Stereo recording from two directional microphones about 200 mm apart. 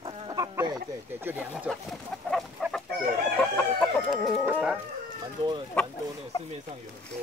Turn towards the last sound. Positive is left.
turn(degrees=5)  # may be behind; listen again after turning